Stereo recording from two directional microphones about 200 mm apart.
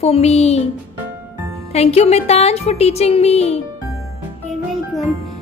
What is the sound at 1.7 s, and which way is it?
A woman's voice, 30° left (ahead or behind).